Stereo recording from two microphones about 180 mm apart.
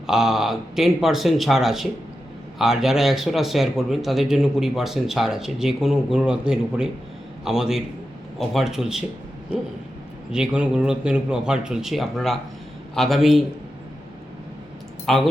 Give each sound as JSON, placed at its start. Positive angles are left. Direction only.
{"t": 0.1, "sound": "speech", "side_deg": 0}
{"t": 10.3, "sound": "speech", "side_deg": -5}
{"t": 15.0, "sound": "speech", "side_deg": 0}